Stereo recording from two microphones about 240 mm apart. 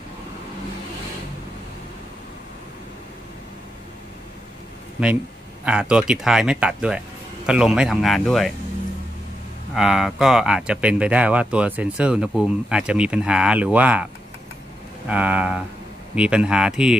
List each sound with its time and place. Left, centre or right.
5.7 s speech: centre
9.8 s speech: centre
15.0 s speech: centre